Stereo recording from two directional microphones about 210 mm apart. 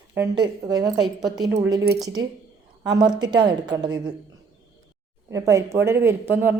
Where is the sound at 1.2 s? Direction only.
20° right (ahead or behind).